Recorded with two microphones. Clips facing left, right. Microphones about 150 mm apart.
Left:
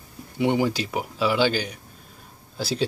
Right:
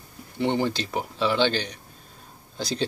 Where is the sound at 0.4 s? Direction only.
10° left (ahead or behind).